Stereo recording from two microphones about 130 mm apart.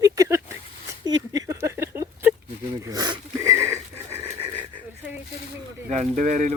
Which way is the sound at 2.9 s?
30° right (ahead or behind).